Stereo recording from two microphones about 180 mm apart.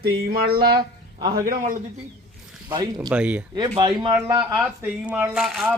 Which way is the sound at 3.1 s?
5° right (ahead or behind).